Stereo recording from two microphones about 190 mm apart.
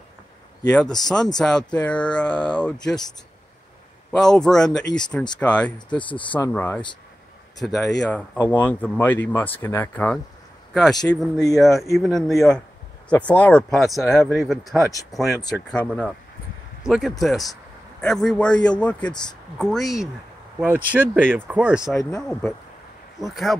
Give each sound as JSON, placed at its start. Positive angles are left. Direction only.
{"t": 1.0, "sound": "speech", "side_deg": 0}
{"t": 4.1, "sound": "speech", "side_deg": 5}
{"t": 5.9, "sound": "speech", "side_deg": 25}
{"t": 6.3, "sound": "speech", "side_deg": 10}
{"t": 7.6, "sound": "speech", "side_deg": 0}
{"t": 21.2, "sound": "speech", "side_deg": 5}
{"t": 21.5, "sound": "speech", "side_deg": -10}
{"t": 23.3, "sound": "speech", "side_deg": 0}